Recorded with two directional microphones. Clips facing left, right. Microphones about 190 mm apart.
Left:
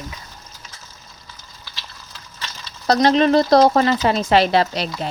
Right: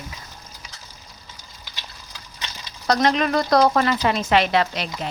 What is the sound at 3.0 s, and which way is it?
A woman's voice, 30° left (ahead or behind).